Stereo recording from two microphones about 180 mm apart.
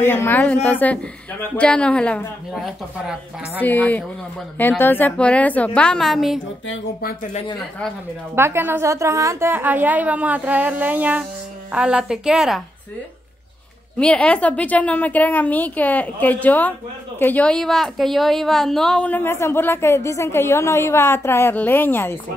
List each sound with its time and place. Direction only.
0.0 s a woman's voice: 10° left (ahead or behind)
3.6 s a woman's voice: 10° left (ahead or behind)
6.7 s speech: 55° left (ahead or behind)
8.4 s a woman's voice: 15° right (ahead or behind)
13.9 s a woman's voice: 5° left (ahead or behind)